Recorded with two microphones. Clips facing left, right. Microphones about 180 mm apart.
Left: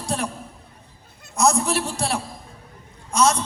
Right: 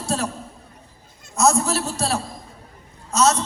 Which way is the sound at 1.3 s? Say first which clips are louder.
Right 1 dB; 15° left (ahead or behind).